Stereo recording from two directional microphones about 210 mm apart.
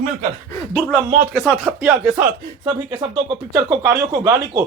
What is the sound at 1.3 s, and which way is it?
Speech, centre (ahead or behind).